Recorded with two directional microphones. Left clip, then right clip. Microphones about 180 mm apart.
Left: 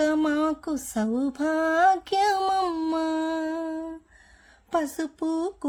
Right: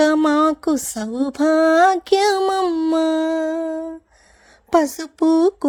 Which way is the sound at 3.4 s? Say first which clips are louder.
Right 8 dB; 25° right (ahead or behind).